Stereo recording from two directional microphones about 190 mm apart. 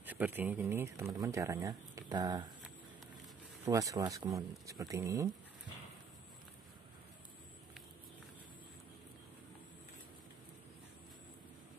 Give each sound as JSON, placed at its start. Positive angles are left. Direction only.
{"t": 0.0, "sound": "speech", "side_deg": -10}
{"t": 3.6, "sound": "speech", "side_deg": -15}